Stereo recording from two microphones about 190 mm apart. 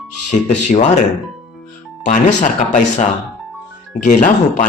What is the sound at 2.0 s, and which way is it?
Speech, 40° left (ahead or behind).